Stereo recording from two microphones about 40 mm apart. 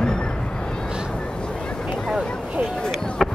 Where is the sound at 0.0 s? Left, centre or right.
Left.